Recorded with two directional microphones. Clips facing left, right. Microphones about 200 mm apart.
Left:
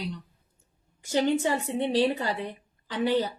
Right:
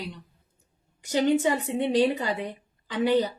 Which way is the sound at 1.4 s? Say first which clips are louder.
Right 2 dB; 15° right (ahead or behind).